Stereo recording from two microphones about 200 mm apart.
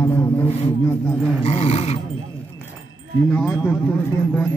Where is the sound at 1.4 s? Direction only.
30° left (ahead or behind).